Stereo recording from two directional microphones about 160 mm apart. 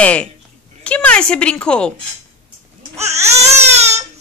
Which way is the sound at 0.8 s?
10° left (ahead or behind).